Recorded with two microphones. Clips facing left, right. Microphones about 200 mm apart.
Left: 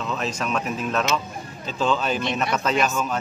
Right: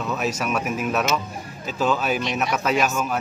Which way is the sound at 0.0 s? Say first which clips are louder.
Right 2 dB; 10° right (ahead or behind).